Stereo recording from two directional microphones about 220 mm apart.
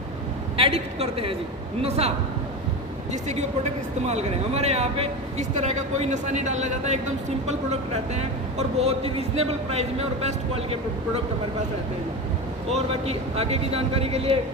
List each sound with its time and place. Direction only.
0.5 s a woman's voice: 25° right (ahead or behind)
12.7 s speech: 30° right (ahead or behind)